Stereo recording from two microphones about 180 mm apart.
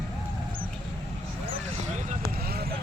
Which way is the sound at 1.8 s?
50° right (ahead or behind).